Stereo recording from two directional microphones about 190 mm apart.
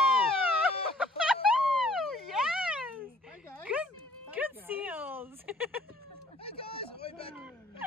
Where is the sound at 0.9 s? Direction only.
5° right (ahead or behind).